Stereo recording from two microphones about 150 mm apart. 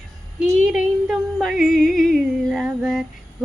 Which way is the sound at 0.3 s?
5° right (ahead or behind).